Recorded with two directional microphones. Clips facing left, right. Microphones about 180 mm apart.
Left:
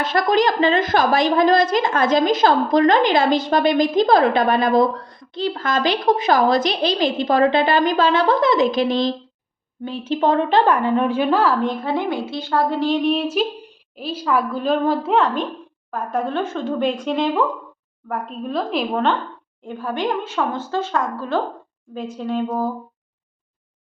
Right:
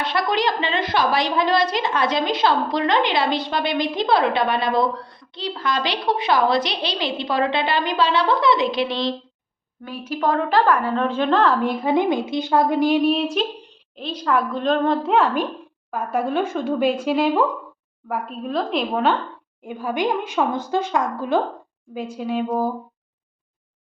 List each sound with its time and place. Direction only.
0.0 s a woman's voice: 45° left (ahead or behind)
9.8 s a woman's voice: 25° left (ahead or behind); by 11.6 s 5° left (ahead or behind)
11.6 s a woman's voice: 10° right (ahead or behind)